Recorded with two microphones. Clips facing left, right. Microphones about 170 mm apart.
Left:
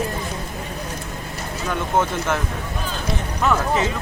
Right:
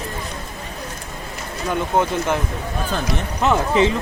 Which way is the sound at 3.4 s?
25° right (ahead or behind).